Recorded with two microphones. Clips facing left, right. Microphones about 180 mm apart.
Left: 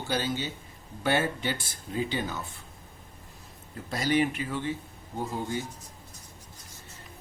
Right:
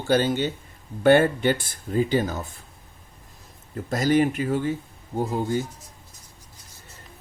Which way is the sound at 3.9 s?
45° right (ahead or behind).